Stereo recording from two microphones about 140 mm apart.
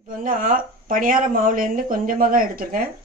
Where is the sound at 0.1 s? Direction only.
75° right (ahead or behind).